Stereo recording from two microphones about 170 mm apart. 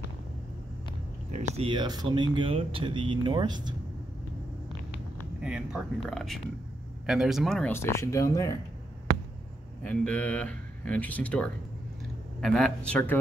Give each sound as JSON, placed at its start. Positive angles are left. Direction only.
{"t": 1.6, "sound": "speech", "side_deg": -25}
{"t": 5.4, "sound": "speech", "side_deg": -5}
{"t": 7.7, "sound": "speech", "side_deg": 15}
{"t": 9.8, "sound": "speech", "side_deg": 10}